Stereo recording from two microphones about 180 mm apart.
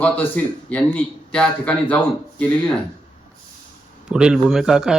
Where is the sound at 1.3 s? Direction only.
5° left (ahead or behind).